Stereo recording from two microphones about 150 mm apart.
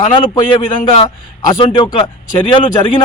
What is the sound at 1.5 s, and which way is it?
Speech, 30° left (ahead or behind).